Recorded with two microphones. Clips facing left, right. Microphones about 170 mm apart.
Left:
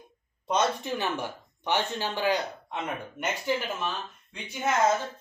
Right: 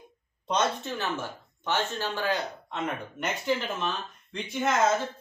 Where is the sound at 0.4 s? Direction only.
10° left (ahead or behind).